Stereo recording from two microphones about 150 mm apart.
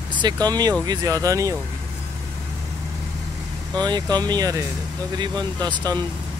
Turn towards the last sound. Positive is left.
turn(degrees=-30)  # may be behind; listen again after turning